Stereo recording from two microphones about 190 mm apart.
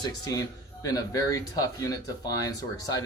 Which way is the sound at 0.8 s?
20° left (ahead or behind).